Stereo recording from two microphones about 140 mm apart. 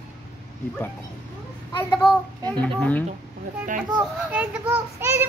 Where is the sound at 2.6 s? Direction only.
10° left (ahead or behind).